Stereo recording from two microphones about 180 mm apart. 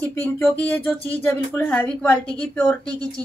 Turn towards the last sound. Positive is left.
turn(degrees=-20)  # may be behind; listen again after turning